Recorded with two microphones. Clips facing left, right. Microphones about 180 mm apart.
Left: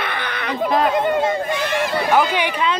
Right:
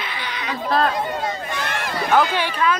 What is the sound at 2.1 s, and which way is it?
Speech, 15° left (ahead or behind).